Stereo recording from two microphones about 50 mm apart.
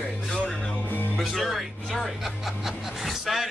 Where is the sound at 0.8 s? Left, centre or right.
Left.